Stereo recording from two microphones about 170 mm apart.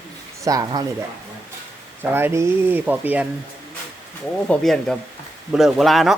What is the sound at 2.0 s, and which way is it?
Speech, 15° right (ahead or behind).